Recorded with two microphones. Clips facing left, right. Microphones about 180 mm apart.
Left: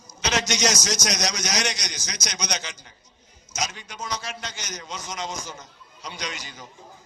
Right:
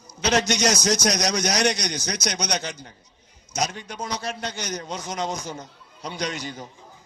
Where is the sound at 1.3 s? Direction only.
55° right (ahead or behind).